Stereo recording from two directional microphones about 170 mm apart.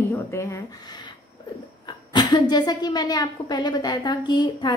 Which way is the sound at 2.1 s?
25° left (ahead or behind).